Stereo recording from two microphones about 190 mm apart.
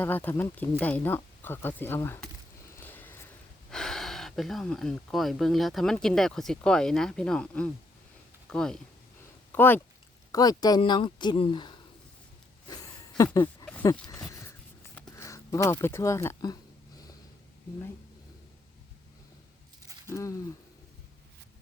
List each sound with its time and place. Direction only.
0.0 s speech: 10° left (ahead or behind)
2.7 s vehicle: 10° left (ahead or behind)
3.7 s speech: 5° left (ahead or behind); by 11.8 s 25° left (ahead or behind)
12.6 s a sound: 20° left (ahead or behind)
14.9 s speech: 15° left (ahead or behind)
20.1 s speech: 15° left (ahead or behind)